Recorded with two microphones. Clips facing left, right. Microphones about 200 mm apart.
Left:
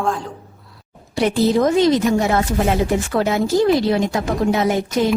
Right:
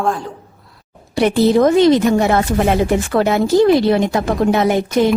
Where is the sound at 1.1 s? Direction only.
65° right (ahead or behind).